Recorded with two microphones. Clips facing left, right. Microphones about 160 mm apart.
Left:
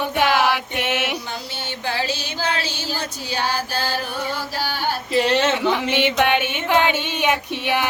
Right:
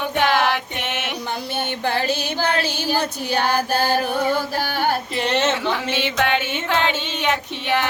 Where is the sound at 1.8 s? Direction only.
55° right (ahead or behind).